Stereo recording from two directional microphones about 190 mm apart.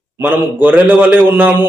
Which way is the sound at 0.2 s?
10° right (ahead or behind).